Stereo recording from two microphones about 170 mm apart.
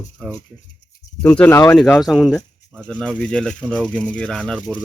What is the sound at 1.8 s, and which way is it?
Speech, centre (ahead or behind).